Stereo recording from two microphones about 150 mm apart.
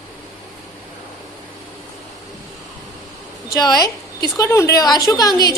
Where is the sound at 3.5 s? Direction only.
25° left (ahead or behind).